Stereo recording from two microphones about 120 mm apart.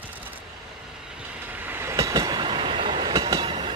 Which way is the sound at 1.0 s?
10° right (ahead or behind).